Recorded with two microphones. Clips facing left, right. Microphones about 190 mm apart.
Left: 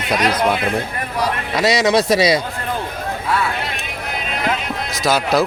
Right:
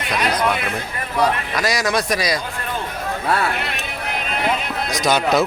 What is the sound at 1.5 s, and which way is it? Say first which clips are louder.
Speech: left 5 dB; 25° left (ahead or behind).